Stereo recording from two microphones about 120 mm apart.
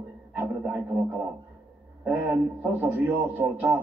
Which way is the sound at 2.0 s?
15° right (ahead or behind).